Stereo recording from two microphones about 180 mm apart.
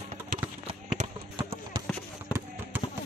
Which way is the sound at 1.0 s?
30° right (ahead or behind).